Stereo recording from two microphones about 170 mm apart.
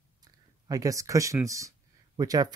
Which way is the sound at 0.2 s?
20° right (ahead or behind).